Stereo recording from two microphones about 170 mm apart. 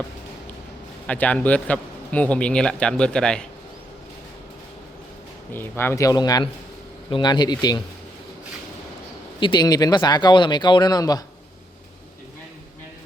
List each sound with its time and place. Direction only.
1.0 s a man's voice: 10° left (ahead or behind)
5.5 s speech: 10° left (ahead or behind)
9.4 s speech: 25° left (ahead or behind)